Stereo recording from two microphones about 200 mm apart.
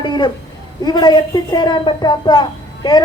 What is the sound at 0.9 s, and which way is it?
A woman's voice, 20° left (ahead or behind).